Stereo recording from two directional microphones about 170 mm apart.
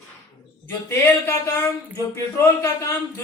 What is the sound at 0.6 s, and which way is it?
Speech, 10° left (ahead or behind).